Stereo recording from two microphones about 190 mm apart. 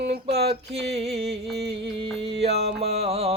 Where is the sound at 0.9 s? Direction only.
35° right (ahead or behind).